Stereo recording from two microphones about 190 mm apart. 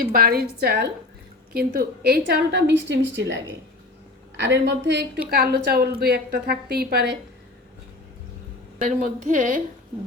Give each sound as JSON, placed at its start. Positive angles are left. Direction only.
{"t": 0.0, "sound": "a woman's voice", "side_deg": -50}
{"t": 5.3, "sound": "a woman's voice", "side_deg": -55}
{"t": 8.8, "sound": "speech", "side_deg": -45}